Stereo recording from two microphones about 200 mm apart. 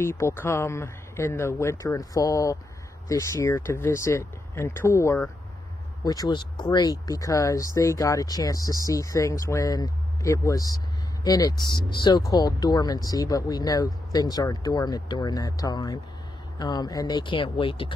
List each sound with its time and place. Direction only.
0.0 s speech: 10° left (ahead or behind)